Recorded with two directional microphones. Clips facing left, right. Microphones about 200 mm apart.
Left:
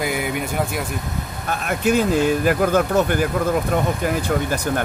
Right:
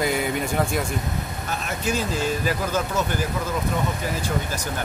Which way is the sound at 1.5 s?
60° left (ahead or behind).